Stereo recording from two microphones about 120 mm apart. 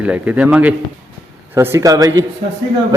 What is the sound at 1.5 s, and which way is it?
Speech, 25° right (ahead or behind).